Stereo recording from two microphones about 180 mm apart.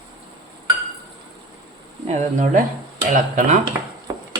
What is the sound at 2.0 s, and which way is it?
Speech, 45° right (ahead or behind).